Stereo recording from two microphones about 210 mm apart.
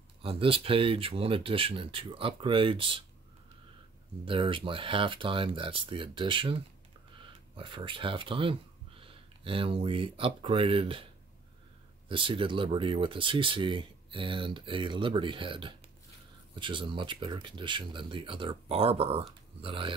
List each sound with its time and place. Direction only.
0.2 s speech: 25° right (ahead or behind)
4.3 s speech: 25° right (ahead or behind)
12.1 s speech: 25° right (ahead or behind)